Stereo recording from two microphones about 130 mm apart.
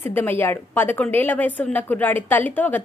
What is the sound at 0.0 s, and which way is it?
A woman's voice, 15° left (ahead or behind).